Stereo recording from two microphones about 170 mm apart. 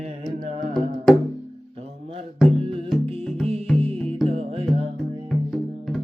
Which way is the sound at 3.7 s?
30° right (ahead or behind).